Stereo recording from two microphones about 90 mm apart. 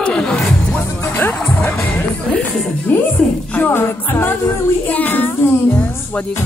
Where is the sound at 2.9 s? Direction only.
20° left (ahead or behind).